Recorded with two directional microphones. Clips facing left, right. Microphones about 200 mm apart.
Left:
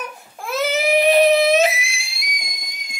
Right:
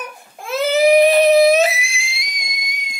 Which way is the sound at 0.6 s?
35° right (ahead or behind).